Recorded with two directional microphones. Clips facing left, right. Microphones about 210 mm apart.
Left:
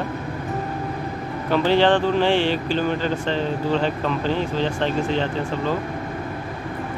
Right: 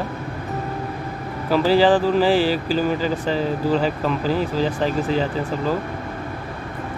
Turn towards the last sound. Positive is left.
turn(degrees=-5)  # may be behind; listen again after turning